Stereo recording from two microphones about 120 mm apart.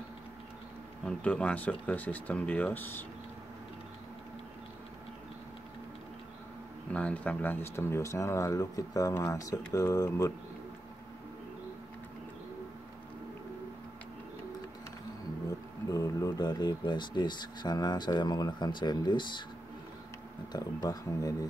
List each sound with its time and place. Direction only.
1.0 s speech: 10° left (ahead or behind)
6.9 s speech: 10° left (ahead or behind); by 10.3 s 25° left (ahead or behind)
15.9 s speech: 25° left (ahead or behind)
20.5 s speech: 30° left (ahead or behind)